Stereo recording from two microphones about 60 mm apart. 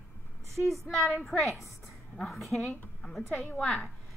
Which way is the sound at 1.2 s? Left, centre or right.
Centre.